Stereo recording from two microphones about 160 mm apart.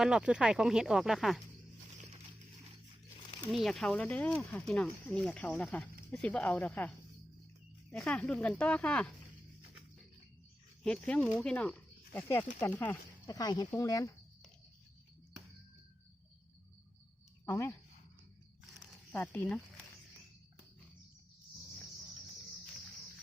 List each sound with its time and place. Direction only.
0.0 s speech: 5° right (ahead or behind)
3.5 s speech: centre (ahead or behind)
10.8 s speech: 5° left (ahead or behind)
13.2 s speech: 20° left (ahead or behind)
17.4 s speech: 15° left (ahead or behind)
19.1 s speech: 10° left (ahead or behind)